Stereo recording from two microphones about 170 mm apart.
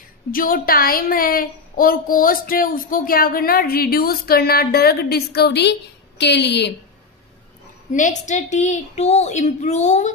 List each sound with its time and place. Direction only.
0.3 s a woman's voice: 55° left (ahead or behind); by 6.7 s 90° left
7.9 s a woman's voice: 45° left (ahead or behind)